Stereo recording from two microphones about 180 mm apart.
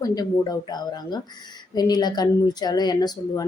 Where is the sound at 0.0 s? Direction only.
20° left (ahead or behind).